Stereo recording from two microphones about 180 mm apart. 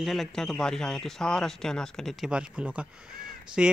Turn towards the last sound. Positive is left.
turn(degrees=-5)  # may be behind; listen again after turning